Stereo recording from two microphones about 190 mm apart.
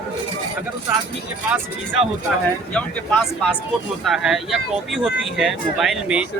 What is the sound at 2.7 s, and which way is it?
Speech, 5° left (ahead or behind).